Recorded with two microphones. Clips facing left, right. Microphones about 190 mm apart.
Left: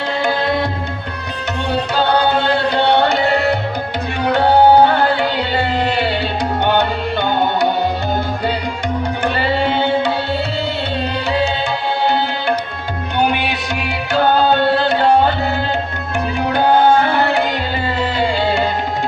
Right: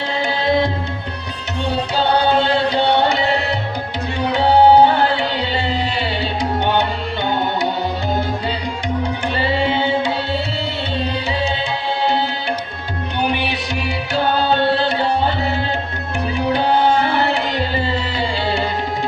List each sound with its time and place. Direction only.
0.2 s tabla: 55° left (ahead or behind)
2.0 s music: 55° left (ahead or behind)
4.2 s tabla: 55° left (ahead or behind)
5.5 s music: 55° left (ahead or behind)
12.0 s tabla: 55° left (ahead or behind)
13.1 s music: 55° left (ahead or behind)